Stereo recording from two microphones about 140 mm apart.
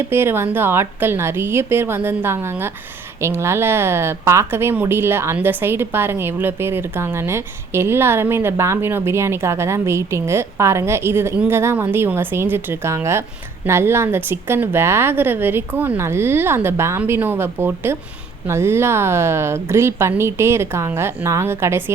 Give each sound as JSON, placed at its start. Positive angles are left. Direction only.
{"t": 0.1, "sound": "speech", "side_deg": -15}